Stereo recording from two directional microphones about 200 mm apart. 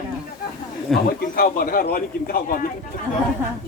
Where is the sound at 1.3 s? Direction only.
50° left (ahead or behind).